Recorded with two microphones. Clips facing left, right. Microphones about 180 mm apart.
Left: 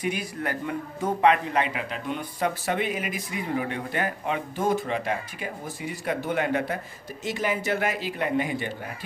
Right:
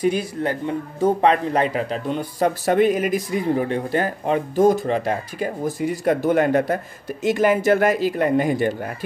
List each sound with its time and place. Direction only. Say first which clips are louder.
0.0 s speech: right 8 dB; 30° right (ahead or behind)